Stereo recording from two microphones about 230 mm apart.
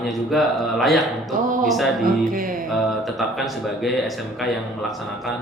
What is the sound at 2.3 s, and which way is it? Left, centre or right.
Music, right.